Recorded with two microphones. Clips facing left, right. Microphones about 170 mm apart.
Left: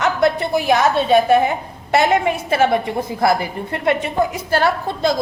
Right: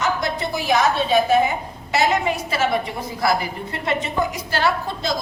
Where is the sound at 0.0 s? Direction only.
60° left (ahead or behind).